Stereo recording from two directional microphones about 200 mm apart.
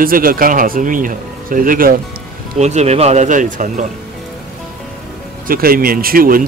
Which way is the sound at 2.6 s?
35° right (ahead or behind).